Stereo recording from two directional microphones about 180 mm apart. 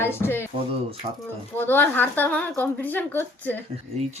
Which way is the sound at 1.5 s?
10° left (ahead or behind).